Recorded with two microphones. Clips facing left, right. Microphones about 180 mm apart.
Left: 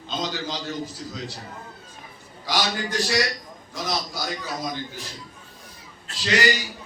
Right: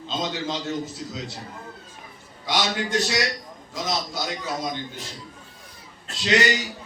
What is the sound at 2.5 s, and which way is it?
A man's voice, 25° right (ahead or behind).